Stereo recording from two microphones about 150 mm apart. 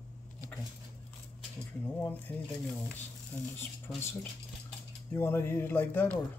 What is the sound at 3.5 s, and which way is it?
Speech, 15° left (ahead or behind).